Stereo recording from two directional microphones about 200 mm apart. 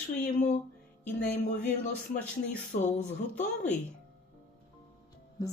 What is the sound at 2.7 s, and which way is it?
Speech, 45° left (ahead or behind).